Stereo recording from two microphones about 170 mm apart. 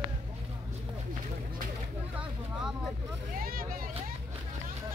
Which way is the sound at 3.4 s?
60° right (ahead or behind).